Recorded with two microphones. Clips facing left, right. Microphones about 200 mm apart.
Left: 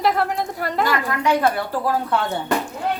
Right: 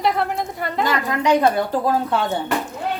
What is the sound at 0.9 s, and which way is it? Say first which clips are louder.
Speech: right 4 dB; 20° right (ahead or behind).